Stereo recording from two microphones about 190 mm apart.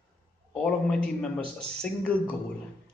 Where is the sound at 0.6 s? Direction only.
5° left (ahead or behind).